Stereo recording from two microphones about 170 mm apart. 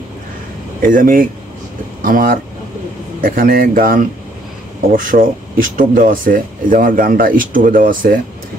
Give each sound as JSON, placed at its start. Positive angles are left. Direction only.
{"t": 0.8, "sound": "speech", "side_deg": -55}